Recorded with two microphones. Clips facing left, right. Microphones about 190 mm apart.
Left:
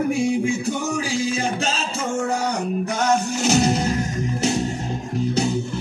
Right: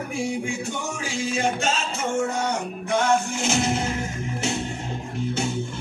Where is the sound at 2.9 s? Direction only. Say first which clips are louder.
Right 1 dB; 40° left (ahead or behind).